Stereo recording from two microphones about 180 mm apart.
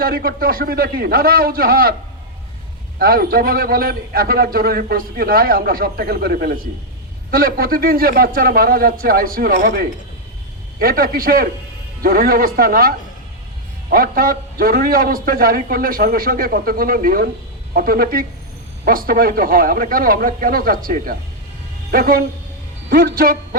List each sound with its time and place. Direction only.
0.0 s a man's voice: 55° right (ahead or behind)
3.0 s a man's voice: 55° right (ahead or behind)